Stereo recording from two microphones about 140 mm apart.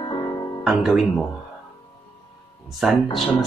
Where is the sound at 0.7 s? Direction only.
Centre (ahead or behind).